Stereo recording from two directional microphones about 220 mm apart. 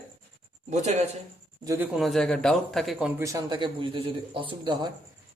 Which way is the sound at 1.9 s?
Centre (ahead or behind).